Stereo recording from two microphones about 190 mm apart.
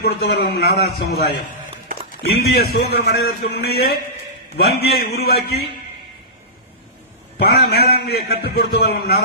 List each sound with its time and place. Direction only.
0.0 s a man's voice: 55° left (ahead or behind)
2.3 s a man's voice: 55° left (ahead or behind)
7.3 s a man's voice: 55° left (ahead or behind)